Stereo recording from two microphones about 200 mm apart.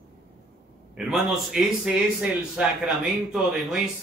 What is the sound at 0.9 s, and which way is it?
A man's voice, 5° right (ahead or behind).